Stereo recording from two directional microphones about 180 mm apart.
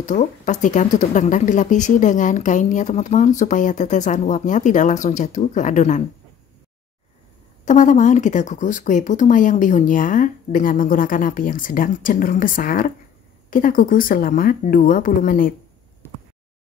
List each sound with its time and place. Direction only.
0.0 s speech: 45° left (ahead or behind)
7.6 s speech: 45° left (ahead or behind)